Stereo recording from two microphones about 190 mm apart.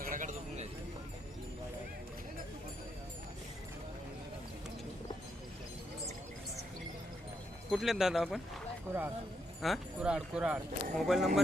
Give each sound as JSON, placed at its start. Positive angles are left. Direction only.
{"t": 0.0, "sound": "a sound", "side_deg": -45}
{"t": 7.7, "sound": "speech", "side_deg": 0}
{"t": 9.6, "sound": "speech", "side_deg": 0}